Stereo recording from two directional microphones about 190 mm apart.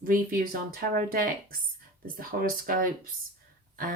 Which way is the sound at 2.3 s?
50° right (ahead or behind).